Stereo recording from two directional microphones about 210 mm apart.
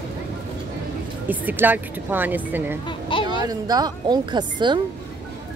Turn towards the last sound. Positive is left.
turn(degrees=-20)  # may be behind; listen again after turning